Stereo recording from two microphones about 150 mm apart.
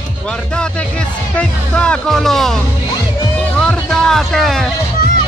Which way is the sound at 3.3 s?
10° left (ahead or behind).